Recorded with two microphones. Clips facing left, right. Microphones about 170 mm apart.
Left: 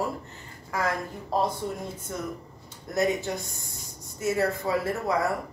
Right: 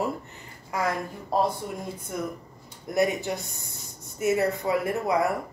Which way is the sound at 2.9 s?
20° right (ahead or behind).